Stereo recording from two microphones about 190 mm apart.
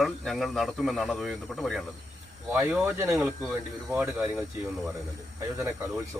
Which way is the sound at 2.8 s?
15° right (ahead or behind).